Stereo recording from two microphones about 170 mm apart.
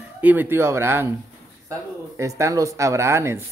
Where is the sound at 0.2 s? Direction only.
10° right (ahead or behind).